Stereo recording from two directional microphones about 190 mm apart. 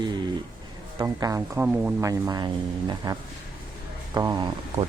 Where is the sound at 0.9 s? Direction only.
20° right (ahead or behind).